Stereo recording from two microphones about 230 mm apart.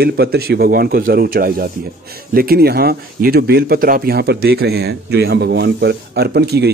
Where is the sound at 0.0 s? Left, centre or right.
Right.